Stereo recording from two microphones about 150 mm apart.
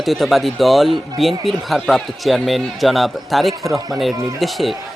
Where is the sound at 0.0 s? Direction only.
Centre (ahead or behind).